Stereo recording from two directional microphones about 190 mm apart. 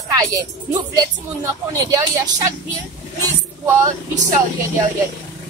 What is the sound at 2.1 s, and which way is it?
Speech, 15° right (ahead or behind).